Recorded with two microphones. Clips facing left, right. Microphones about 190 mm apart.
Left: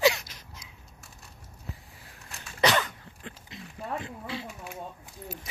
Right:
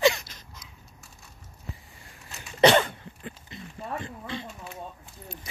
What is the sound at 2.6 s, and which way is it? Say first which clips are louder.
Dog: right 7 dB; 30° right (ahead or behind).